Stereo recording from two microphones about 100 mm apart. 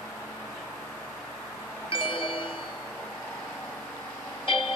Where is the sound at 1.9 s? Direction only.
60° left (ahead or behind).